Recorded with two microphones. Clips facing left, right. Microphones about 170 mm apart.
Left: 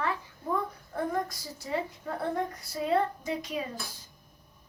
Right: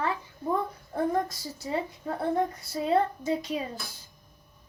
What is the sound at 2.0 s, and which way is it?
A child's voice, 25° right (ahead or behind).